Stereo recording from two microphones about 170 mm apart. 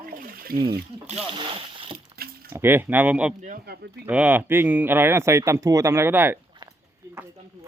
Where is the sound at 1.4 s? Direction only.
30° right (ahead or behind).